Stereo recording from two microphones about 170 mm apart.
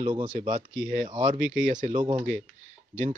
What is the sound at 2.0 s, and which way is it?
Speech, 25° right (ahead or behind).